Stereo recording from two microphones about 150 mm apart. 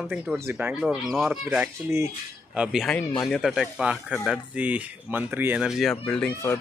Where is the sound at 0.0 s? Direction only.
5° right (ahead or behind).